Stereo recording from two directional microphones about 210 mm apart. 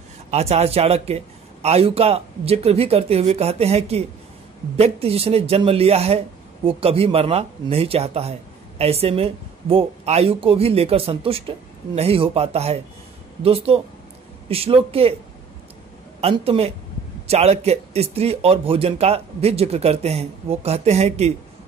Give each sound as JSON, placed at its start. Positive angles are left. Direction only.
{"t": 0.3, "sound": "speech", "side_deg": -30}
{"t": 16.2, "sound": "speech", "side_deg": -30}